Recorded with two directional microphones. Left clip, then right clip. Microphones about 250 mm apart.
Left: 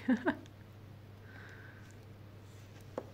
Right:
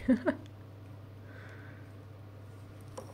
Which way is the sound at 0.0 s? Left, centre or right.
Centre.